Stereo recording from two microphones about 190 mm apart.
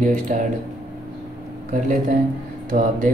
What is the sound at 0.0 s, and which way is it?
Speech, 45° right (ahead or behind).